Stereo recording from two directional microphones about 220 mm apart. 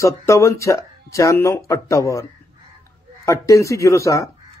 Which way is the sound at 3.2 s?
15° left (ahead or behind).